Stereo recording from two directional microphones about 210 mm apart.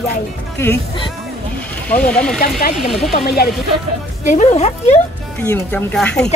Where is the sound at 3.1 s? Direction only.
50° left (ahead or behind).